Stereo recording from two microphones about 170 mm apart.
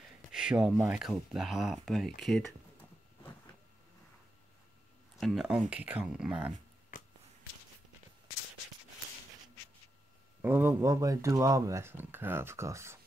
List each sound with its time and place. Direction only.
0.3 s speech: 5° right (ahead or behind)
5.1 s speech: centre (ahead or behind)
6.9 s a sound: 55° left (ahead or behind)
10.4 s speech: 10° right (ahead or behind)